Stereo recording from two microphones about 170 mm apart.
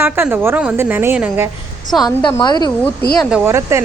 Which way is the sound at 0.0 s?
10° right (ahead or behind).